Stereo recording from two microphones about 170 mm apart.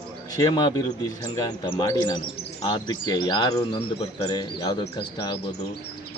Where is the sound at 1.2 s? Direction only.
25° left (ahead or behind).